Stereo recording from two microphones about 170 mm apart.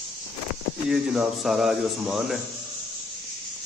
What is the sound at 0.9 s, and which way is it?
Speech, centre (ahead or behind).